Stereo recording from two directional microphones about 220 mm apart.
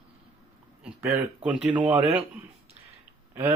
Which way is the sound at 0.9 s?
10° right (ahead or behind).